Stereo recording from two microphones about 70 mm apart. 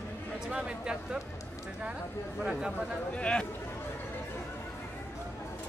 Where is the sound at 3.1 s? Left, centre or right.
Centre.